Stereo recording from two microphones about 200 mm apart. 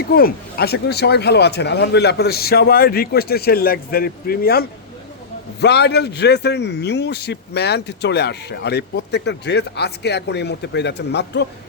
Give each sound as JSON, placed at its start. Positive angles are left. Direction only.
{"t": 0.1, "sound": "a man's voice", "side_deg": 50}